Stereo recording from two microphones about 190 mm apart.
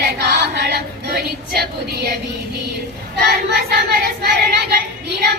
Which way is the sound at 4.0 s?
55° right (ahead or behind).